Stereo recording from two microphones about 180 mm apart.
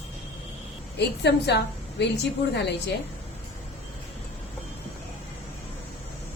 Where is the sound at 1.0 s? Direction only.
70° left (ahead or behind).